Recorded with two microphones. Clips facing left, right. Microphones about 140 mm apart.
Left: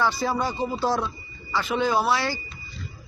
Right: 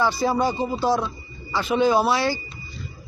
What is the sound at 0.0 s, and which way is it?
Speech, 10° right (ahead or behind).